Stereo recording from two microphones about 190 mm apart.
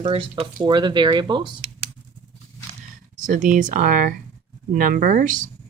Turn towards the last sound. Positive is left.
turn(degrees=-45)  # may be behind; listen again after turning